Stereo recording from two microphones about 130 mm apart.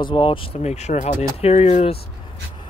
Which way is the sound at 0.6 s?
60° left (ahead or behind).